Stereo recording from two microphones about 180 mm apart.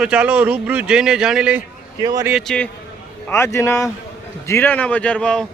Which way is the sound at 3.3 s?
15° left (ahead or behind).